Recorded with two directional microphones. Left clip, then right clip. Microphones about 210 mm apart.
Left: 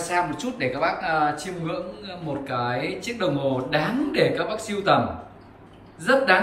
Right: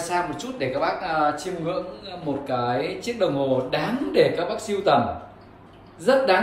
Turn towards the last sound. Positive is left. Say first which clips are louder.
# even
turn(degrees=-5)  # may be behind; listen again after turning